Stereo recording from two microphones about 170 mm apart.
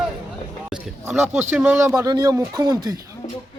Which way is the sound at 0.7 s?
10° right (ahead or behind).